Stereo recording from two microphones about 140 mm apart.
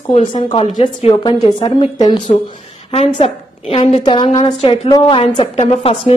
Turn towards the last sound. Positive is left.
turn(degrees=45)  # may be behind; listen again after turning